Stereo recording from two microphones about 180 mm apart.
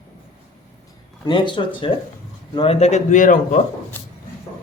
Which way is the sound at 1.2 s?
25° left (ahead or behind).